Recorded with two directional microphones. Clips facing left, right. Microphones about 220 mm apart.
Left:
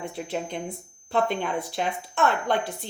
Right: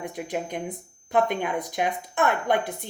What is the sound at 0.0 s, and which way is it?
Speech, 15° right (ahead or behind).